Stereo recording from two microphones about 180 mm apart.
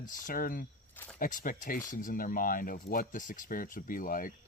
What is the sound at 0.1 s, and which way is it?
Speech, 50° left (ahead or behind).